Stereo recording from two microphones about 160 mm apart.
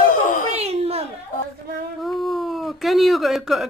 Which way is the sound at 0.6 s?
40° right (ahead or behind).